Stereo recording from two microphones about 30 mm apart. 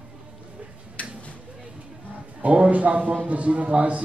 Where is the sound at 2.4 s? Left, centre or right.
Right.